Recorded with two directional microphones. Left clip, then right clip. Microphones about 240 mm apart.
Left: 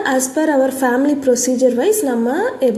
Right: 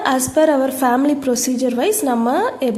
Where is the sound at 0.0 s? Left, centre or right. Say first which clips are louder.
Right 2 dB; centre.